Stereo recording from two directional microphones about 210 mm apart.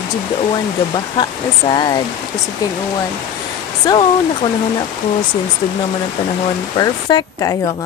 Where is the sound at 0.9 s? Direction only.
20° left (ahead or behind).